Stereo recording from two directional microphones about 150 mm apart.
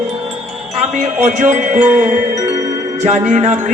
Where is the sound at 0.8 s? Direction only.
55° right (ahead or behind).